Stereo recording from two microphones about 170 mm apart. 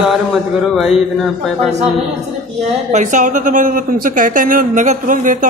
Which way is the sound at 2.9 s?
45° right (ahead or behind).